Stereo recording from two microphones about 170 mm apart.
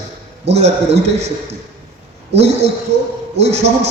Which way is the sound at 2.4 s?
40° right (ahead or behind).